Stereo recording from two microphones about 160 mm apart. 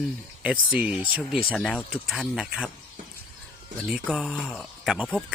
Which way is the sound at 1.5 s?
5° left (ahead or behind).